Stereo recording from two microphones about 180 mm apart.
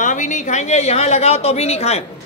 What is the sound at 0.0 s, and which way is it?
Speech, 45° left (ahead or behind).